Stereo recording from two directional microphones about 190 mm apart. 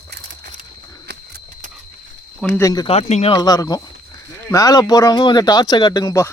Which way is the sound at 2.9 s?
35° left (ahead or behind).